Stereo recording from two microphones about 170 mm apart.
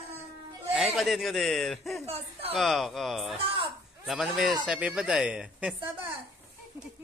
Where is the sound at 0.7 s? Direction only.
Centre (ahead or behind).